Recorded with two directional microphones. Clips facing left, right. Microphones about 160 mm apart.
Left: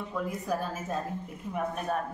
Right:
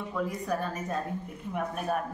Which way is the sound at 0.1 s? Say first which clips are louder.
Right 1 dB; 5° left (ahead or behind).